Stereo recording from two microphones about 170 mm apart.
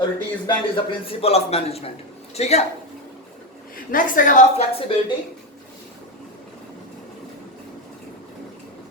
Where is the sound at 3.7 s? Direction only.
55° left (ahead or behind).